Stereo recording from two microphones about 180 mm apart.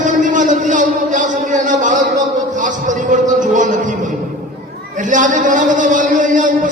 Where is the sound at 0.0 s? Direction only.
45° right (ahead or behind).